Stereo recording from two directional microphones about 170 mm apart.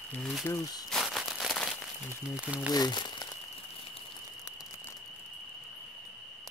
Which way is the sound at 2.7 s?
25° left (ahead or behind).